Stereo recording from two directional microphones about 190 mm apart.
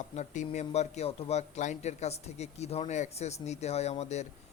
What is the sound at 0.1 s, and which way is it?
Speech, 35° left (ahead or behind).